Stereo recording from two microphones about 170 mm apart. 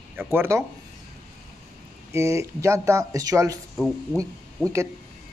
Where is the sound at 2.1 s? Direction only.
15° right (ahead or behind).